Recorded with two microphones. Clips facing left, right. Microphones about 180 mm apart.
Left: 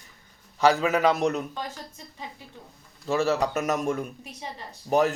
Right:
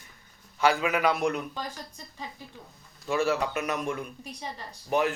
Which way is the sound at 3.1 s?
40° left (ahead or behind).